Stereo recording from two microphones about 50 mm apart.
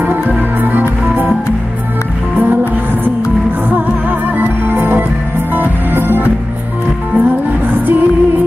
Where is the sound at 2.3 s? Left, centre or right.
Right.